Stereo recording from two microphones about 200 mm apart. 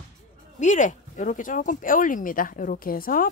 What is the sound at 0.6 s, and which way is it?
Speech, 40° left (ahead or behind).